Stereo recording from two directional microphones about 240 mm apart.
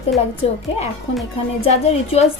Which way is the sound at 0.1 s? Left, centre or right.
Centre.